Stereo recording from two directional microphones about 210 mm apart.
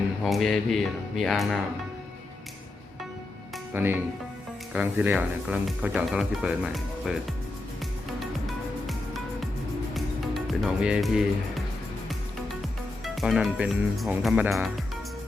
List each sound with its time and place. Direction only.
0.2 s speech: centre (ahead or behind)
3.8 s speech: 10° right (ahead or behind)
8.2 s music: centre (ahead or behind)
13.1 s speech: centre (ahead or behind)